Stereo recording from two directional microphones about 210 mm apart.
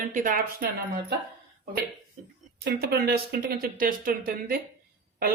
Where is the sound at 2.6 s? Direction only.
50° right (ahead or behind).